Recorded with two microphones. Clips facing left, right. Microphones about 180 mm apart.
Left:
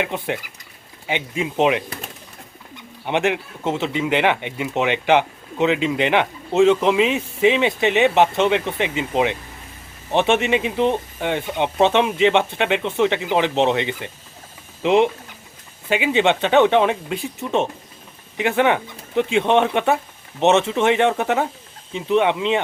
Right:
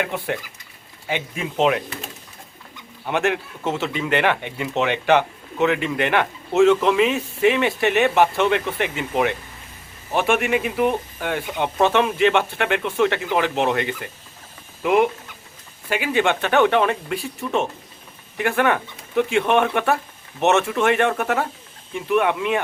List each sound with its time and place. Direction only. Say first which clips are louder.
0.0 s speech: left 1 dB; 15° left (ahead or behind)
3.1 s speech: left 1 dB; 15° left (ahead or behind)